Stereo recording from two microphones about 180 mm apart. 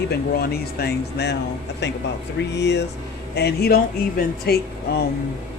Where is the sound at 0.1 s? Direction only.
60° left (ahead or behind).